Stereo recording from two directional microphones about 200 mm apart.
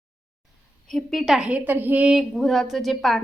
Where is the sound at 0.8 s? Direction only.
Centre (ahead or behind).